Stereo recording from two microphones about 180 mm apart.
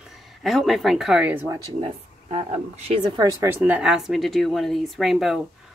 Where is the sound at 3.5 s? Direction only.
10° right (ahead or behind).